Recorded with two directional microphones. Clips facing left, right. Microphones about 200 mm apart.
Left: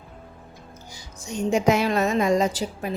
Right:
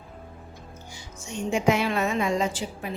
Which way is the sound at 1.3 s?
40° left (ahead or behind).